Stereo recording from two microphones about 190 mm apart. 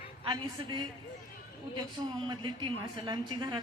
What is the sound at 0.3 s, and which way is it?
Speech, 25° right (ahead or behind).